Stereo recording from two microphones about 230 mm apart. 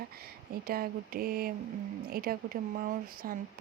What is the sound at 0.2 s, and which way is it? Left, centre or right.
Speech, right.